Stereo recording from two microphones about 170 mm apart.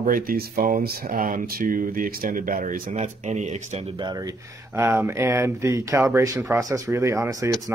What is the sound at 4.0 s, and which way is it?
Speech, 25° right (ahead or behind).